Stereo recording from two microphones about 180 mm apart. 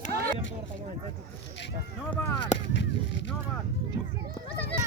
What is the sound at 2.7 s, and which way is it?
Speech, 80° left.